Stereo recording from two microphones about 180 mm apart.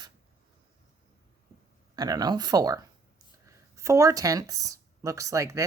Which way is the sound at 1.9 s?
20° right (ahead or behind).